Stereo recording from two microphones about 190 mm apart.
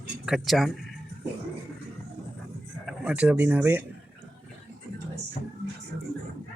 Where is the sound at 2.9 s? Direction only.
5° right (ahead or behind).